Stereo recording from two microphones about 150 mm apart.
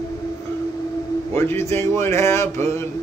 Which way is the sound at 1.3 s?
15° left (ahead or behind).